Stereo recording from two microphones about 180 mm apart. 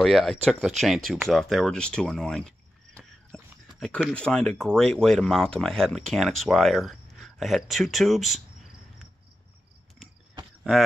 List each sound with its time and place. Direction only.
0.0 s speech: centre (ahead or behind)
3.3 s a sound: 5° left (ahead or behind)
4.1 s speech: 5° left (ahead or behind)